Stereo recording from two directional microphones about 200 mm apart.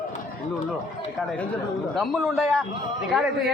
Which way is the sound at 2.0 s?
Centre (ahead or behind).